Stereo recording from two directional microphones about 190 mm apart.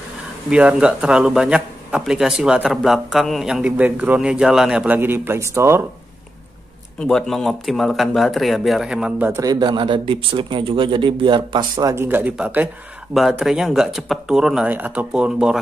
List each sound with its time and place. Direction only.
0.5 s speech: 5° right (ahead or behind)
7.1 s speech: centre (ahead or behind)
9.5 s speech: 25° right (ahead or behind); by 15.6 s 5° right (ahead or behind)